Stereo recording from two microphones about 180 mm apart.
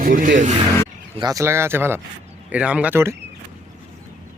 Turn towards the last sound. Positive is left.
turn(degrees=-10)  # may be behind; listen again after turning